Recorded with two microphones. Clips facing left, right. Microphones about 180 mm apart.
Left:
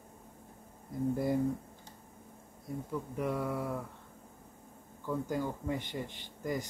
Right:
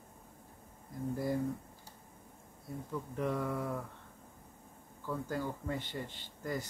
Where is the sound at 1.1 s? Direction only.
20° left (ahead or behind).